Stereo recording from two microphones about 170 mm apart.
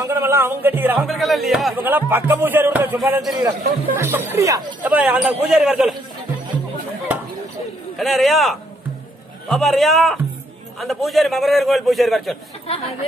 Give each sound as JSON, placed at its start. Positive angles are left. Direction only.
{"t": 0.0, "sound": "speech", "side_deg": -15}
{"t": 1.0, "sound": "a man's voice", "side_deg": 0}
{"t": 4.8, "sound": "a man's voice", "side_deg": -10}
{"t": 8.0, "sound": "a man's voice", "side_deg": 0}